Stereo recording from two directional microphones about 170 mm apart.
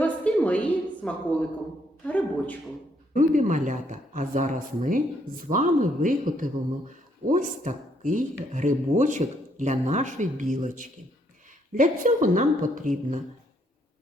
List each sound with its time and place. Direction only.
0.0 s a sound: 10° left (ahead or behind)
2.0 s a man's voice: 10° left (ahead or behind)
3.2 s speech: 50° right (ahead or behind)